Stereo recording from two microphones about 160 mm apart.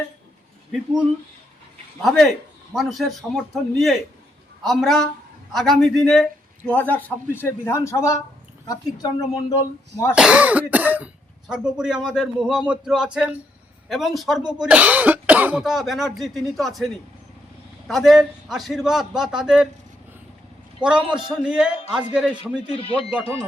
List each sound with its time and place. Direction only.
2.0 s a man's voice: centre (ahead or behind); by 10.2 s 20° left (ahead or behind)
10.2 s speech: 5° right (ahead or behind)
20.8 s speech: 5° right (ahead or behind)
22.7 s speech: 35° left (ahead or behind)